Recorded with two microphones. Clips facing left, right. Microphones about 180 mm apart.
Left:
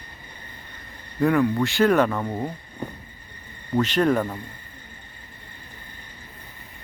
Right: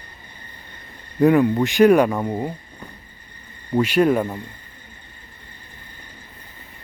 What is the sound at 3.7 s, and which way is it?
Speech, 10° right (ahead or behind).